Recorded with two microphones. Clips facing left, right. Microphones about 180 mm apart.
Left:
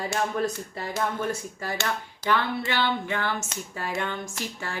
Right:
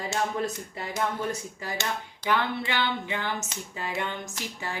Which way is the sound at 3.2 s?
15° right (ahead or behind).